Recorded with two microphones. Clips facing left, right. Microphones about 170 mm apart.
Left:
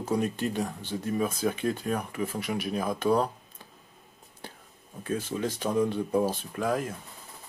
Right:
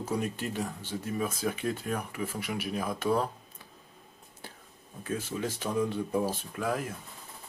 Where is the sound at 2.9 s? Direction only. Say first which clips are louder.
Left 4 dB; 15° left (ahead or behind).